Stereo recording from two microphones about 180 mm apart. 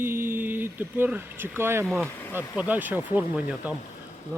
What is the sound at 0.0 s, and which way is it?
Speech, 15° right (ahead or behind).